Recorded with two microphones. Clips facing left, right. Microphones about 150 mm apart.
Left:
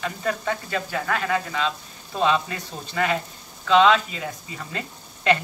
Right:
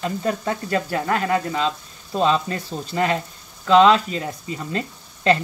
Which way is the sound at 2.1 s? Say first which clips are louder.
Right 2 dB; 30° right (ahead or behind).